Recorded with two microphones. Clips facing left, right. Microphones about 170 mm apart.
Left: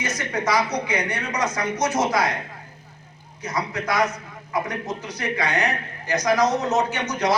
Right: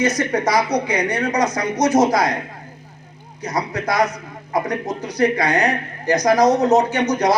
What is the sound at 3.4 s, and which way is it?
Speech, 35° right (ahead or behind).